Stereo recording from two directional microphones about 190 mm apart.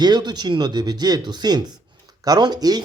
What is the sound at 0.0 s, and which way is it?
Speech, 20° right (ahead or behind).